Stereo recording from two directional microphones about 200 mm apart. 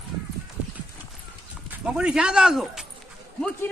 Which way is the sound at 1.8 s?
5° right (ahead or behind).